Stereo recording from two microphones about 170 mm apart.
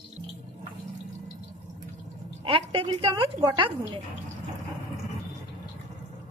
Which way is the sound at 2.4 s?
30° right (ahead or behind).